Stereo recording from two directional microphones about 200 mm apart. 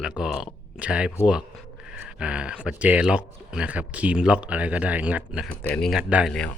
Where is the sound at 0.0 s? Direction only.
Centre (ahead or behind).